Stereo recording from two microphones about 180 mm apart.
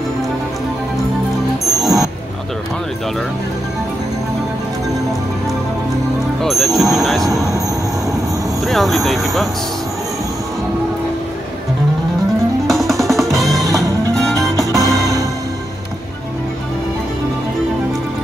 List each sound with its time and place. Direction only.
1.6 s music: centre (ahead or behind)
6.4 s speech: centre (ahead or behind)
8.6 s speech: centre (ahead or behind)
12.6 s music: centre (ahead or behind)
14.9 s music: 20° right (ahead or behind)